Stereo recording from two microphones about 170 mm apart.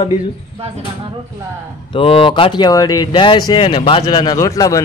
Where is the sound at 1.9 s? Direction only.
30° left (ahead or behind).